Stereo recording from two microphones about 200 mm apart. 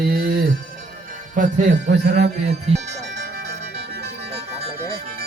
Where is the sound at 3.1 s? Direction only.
55° right (ahead or behind).